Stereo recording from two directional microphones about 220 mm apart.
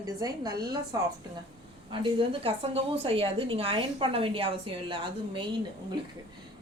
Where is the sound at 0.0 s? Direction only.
15° right (ahead or behind).